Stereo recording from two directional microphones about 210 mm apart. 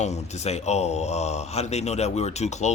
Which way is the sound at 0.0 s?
30° left (ahead or behind).